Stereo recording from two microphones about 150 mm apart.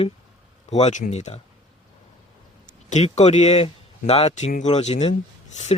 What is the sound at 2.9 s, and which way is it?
Speech, 50° left (ahead or behind).